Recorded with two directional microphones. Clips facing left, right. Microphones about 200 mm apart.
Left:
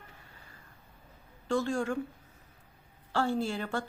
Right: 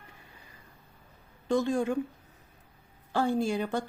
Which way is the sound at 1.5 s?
20° right (ahead or behind).